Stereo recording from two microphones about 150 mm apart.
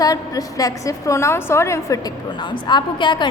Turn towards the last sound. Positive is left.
turn(degrees=30)  # may be behind; listen again after turning